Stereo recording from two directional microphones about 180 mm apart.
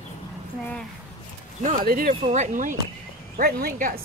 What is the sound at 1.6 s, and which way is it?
Speech, 50° right (ahead or behind).